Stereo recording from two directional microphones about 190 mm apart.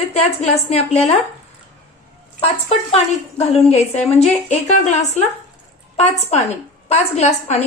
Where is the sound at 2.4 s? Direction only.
30° left (ahead or behind).